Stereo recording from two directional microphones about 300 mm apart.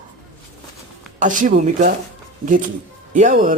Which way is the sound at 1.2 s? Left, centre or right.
Right.